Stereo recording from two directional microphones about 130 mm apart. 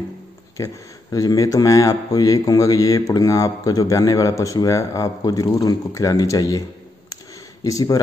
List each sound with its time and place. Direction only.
0.6 s a man's voice: 25° left (ahead or behind)
7.6 s a man's voice: 25° left (ahead or behind)